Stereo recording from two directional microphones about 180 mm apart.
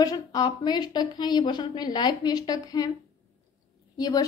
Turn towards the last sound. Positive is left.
turn(degrees=20)  # may be behind; listen again after turning